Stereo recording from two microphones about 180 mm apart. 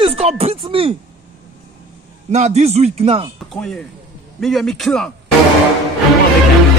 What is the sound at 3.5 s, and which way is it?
Speech, 5° left (ahead or behind).